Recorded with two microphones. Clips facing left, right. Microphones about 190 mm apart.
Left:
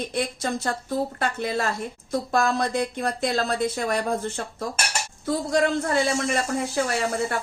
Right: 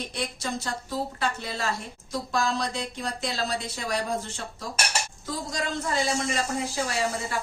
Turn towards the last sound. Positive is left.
turn(degrees=60)  # may be behind; listen again after turning